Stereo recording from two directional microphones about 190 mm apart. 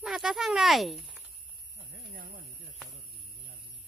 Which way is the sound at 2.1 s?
55° right (ahead or behind).